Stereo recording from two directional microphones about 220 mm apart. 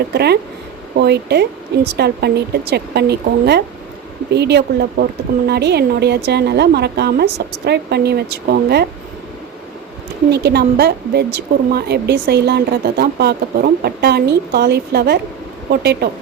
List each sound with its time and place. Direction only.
0.1 s a woman's voice: 45° right (ahead or behind)
10.3 s a woman's voice: 45° right (ahead or behind)